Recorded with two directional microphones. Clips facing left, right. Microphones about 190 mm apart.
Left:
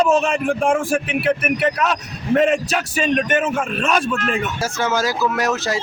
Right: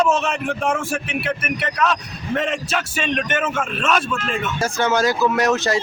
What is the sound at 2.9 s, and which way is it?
Speech, 40° left (ahead or behind).